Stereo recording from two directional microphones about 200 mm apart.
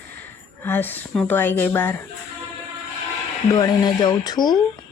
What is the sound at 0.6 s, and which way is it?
Speech, 10° left (ahead or behind).